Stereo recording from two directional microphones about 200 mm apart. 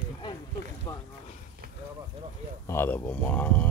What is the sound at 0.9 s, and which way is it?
Boat, 15° left (ahead or behind).